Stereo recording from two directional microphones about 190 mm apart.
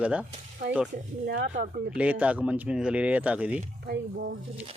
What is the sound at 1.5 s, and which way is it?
Speech, 55° right (ahead or behind).